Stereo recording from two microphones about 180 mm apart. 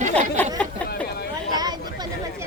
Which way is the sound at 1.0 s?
65° left (ahead or behind).